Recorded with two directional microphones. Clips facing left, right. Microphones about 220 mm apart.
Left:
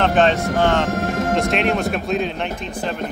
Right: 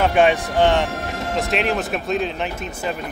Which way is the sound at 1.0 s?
50° left (ahead or behind).